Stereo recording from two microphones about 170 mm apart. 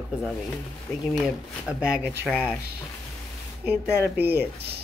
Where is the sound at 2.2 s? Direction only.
5° left (ahead or behind).